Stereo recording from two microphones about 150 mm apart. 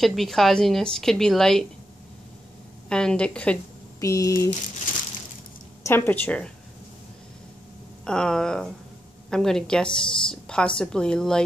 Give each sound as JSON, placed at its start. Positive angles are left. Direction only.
{"t": 0.0, "sound": "a woman's voice", "side_deg": 0}
{"t": 2.9, "sound": "a woman's voice", "side_deg": 5}
{"t": 4.0, "sound": "speech", "side_deg": 20}
{"t": 5.9, "sound": "a woman's voice", "side_deg": 15}
{"t": 8.0, "sound": "a woman's voice", "side_deg": 5}